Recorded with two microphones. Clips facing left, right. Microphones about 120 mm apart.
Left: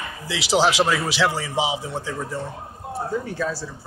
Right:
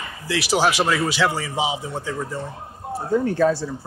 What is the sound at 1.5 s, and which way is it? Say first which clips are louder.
Speech: even; 90° left.